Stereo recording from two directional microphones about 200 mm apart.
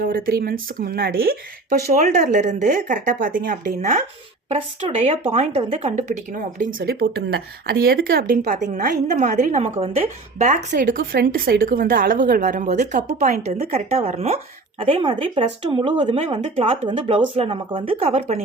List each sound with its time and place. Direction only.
0.0 s speech: 45° right (ahead or behind)
10.8 s speech: 45° right (ahead or behind)